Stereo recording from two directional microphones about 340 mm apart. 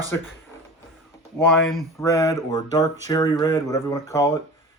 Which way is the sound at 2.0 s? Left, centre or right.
Centre.